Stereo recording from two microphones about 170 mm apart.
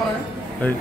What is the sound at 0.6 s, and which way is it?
Speech, 10° left (ahead or behind).